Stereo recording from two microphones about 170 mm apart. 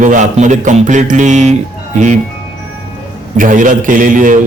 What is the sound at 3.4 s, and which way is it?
A man's voice, 50° right (ahead or behind).